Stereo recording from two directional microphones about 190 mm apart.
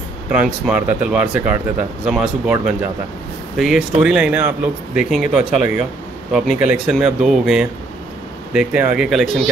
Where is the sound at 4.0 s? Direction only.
5° right (ahead or behind).